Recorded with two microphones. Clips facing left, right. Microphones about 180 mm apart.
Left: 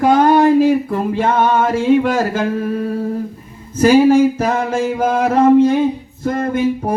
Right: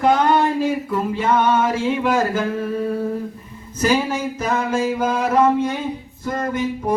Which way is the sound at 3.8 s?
55° left (ahead or behind).